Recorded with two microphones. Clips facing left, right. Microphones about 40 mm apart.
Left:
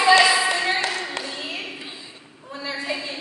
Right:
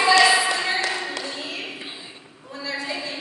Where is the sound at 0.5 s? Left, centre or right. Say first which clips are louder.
Left 1 dB; centre.